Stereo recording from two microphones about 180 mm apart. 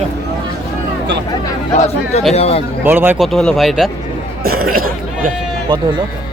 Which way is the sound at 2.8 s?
10° right (ahead or behind).